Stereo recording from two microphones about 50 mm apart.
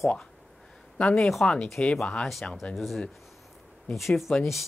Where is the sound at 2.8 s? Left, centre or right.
Centre.